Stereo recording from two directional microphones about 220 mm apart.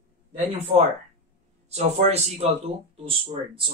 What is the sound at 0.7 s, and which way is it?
Speech, 25° right (ahead or behind).